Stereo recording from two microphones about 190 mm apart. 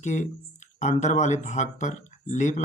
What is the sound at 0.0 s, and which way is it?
Speech, 40° left (ahead or behind).